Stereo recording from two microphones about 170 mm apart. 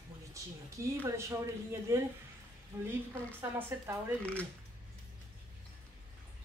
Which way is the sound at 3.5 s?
15° right (ahead or behind).